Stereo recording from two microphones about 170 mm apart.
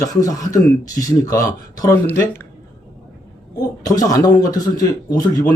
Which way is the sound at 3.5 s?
20° left (ahead or behind).